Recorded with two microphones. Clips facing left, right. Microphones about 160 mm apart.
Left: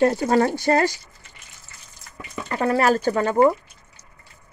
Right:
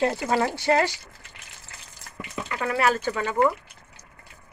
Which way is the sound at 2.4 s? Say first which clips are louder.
Left 5 dB; 40° left (ahead or behind).